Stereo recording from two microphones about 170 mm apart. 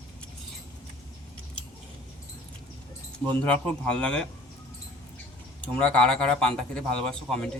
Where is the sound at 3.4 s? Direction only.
5° left (ahead or behind).